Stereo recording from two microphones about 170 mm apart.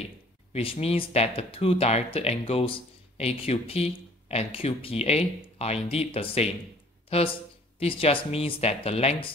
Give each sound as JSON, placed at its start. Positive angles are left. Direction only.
{"t": 0.5, "sound": "speech", "side_deg": 35}